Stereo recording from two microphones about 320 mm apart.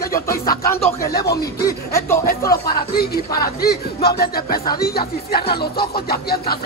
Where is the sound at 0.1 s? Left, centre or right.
Centre.